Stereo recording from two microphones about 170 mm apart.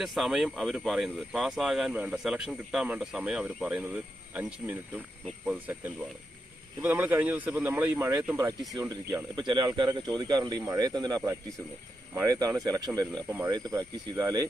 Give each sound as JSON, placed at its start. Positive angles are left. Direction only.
{"t": 0.0, "sound": "speech", "side_deg": 0}